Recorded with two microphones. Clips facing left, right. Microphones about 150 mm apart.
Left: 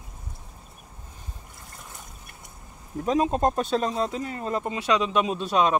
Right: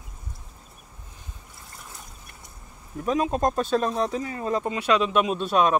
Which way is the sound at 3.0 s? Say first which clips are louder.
Left 1 dB; 25° left (ahead or behind).